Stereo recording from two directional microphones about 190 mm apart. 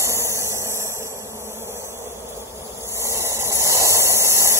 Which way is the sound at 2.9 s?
15° right (ahead or behind).